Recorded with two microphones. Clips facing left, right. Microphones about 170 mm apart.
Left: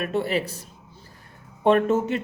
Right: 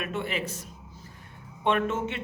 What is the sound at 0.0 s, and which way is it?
Speech, 35° left (ahead or behind).